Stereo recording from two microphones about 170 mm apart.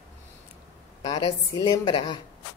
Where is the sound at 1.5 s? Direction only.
25° left (ahead or behind).